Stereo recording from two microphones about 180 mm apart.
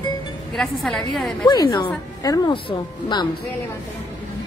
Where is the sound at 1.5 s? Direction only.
20° left (ahead or behind).